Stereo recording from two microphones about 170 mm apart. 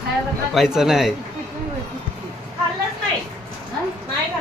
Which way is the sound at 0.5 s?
Centre (ahead or behind).